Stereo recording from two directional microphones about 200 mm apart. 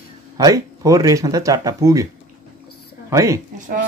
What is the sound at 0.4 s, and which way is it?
Speech, 15° right (ahead or behind).